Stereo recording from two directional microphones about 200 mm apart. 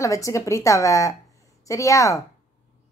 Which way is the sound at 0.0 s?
15° left (ahead or behind).